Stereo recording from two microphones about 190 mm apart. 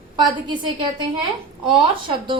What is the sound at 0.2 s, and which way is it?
A woman's voice, 25° right (ahead or behind).